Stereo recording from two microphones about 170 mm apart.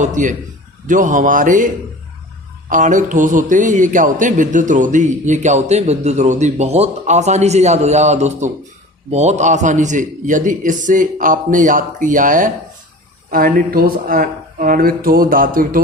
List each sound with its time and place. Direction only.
0.0 s a man's voice: 50° right (ahead or behind)